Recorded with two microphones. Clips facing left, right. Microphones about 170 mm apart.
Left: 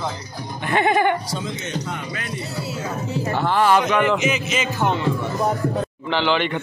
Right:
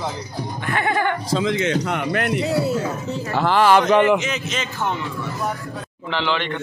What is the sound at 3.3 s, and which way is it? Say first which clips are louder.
Speech: right 2 dB; 90° right.